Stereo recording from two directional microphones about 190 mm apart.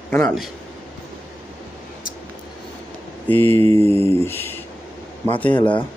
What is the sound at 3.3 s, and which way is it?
Mantra, 10° left (ahead or behind).